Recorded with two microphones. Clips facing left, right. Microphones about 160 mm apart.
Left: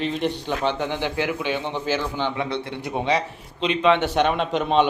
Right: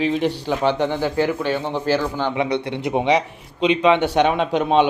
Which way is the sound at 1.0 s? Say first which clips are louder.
Right 5 dB; 40° right (ahead or behind).